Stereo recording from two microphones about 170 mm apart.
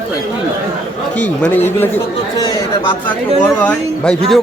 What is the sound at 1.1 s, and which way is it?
Speech, 10° left (ahead or behind).